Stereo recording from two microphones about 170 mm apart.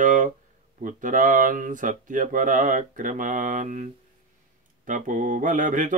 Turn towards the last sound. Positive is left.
turn(degrees=-50)  # may be behind; listen again after turning